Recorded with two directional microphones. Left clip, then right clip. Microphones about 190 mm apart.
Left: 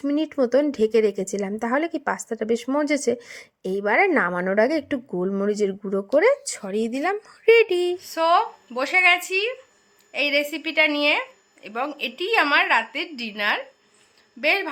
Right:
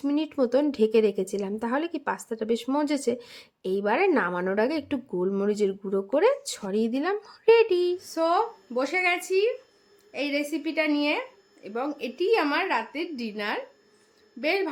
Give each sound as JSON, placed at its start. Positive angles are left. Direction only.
{"t": 0.0, "sound": "speech", "side_deg": 15}
{"t": 7.9, "sound": "a woman's voice", "side_deg": -5}